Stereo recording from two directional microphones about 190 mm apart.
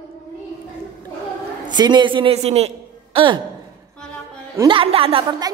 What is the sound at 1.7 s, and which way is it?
A woman's voice, 25° right (ahead or behind).